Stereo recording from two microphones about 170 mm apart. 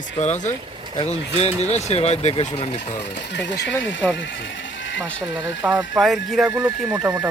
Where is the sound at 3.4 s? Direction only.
90° left.